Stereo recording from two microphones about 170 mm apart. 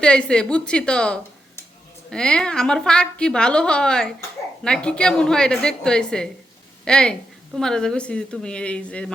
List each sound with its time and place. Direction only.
0.0 s a woman's voice: 5° left (ahead or behind)